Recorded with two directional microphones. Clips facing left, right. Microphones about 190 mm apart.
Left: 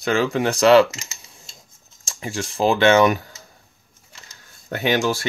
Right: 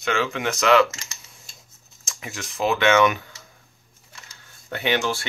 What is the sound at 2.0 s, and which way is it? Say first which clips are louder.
Speech: left 8 dB; 30° left (ahead or behind).